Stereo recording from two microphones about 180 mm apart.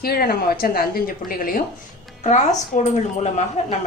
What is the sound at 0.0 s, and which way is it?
A woman's voice, 55° left (ahead or behind).